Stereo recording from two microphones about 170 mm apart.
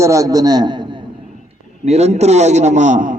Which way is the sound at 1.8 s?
40° right (ahead or behind).